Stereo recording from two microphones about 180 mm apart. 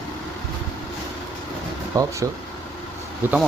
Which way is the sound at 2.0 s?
20° right (ahead or behind).